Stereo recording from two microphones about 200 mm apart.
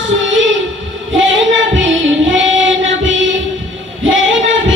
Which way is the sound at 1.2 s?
70° right (ahead or behind).